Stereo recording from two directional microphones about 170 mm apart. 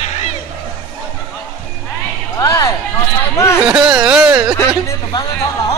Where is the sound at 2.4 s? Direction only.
20° left (ahead or behind).